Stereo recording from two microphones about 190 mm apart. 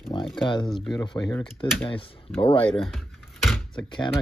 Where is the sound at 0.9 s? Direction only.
25° left (ahead or behind).